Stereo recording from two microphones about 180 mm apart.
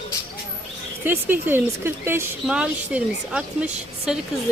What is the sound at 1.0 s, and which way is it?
A woman's voice, 10° right (ahead or behind).